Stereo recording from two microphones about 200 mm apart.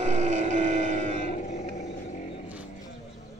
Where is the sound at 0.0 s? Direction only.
35° right (ahead or behind).